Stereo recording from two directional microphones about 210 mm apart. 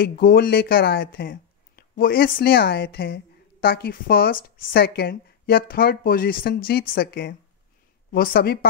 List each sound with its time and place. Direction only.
0.0 s speech: 45° left (ahead or behind)